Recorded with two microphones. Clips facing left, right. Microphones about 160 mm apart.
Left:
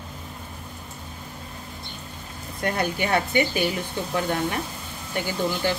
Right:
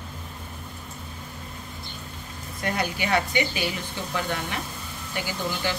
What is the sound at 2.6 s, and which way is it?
Speech, 50° left (ahead or behind).